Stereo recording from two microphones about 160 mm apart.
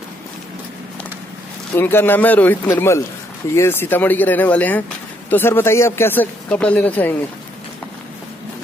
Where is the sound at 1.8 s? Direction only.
15° left (ahead or behind).